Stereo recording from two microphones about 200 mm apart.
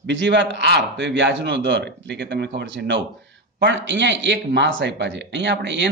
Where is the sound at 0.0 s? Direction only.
60° right (ahead or behind).